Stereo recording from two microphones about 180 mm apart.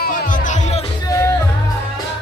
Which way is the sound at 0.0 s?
50° left (ahead or behind).